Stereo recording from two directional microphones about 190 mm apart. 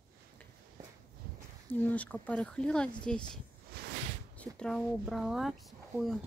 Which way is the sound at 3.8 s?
55° right (ahead or behind).